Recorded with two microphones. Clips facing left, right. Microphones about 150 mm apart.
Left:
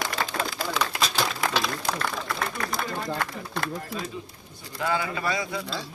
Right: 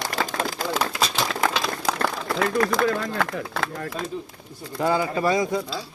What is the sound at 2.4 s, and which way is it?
Speech, 90° right.